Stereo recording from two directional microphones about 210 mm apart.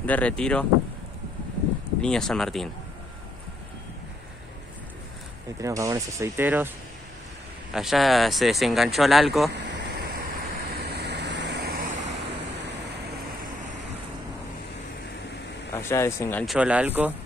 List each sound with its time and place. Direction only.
0.0 s speech: 5° left (ahead or behind)
2.0 s speech: 5° left (ahead or behind)
5.6 s speech: 15° right (ahead or behind)
7.7 s speech: centre (ahead or behind)
9.5 s a sound: 55° right (ahead or behind)
10.7 s vehicle: 50° right (ahead or behind)
15.7 s speech: 10° left (ahead or behind)
16.4 s speech: 5° right (ahead or behind)